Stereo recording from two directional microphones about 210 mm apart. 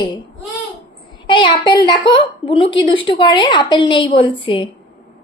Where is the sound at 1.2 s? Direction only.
20° left (ahead or behind).